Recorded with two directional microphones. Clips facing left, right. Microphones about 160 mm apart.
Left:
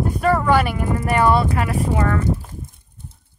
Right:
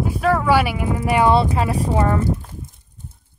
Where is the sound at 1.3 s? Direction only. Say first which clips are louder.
Right 1 dB; 25° right (ahead or behind).